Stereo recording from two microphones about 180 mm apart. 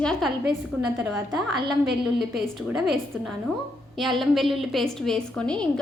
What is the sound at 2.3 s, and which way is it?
A woman's voice, centre (ahead or behind).